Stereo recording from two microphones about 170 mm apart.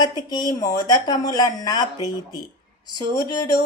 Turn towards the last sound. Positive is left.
turn(degrees=25)  # may be behind; listen again after turning